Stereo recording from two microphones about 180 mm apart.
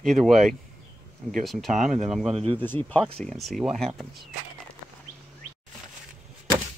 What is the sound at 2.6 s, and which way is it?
Speech, 10° left (ahead or behind).